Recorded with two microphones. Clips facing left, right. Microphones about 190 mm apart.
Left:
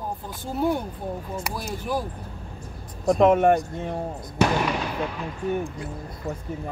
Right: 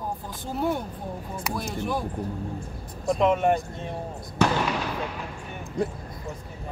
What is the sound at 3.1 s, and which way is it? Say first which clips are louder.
Speech: left 4 dB; 50° left (ahead or behind).